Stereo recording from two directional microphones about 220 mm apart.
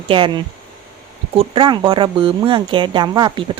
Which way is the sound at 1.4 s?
20° right (ahead or behind).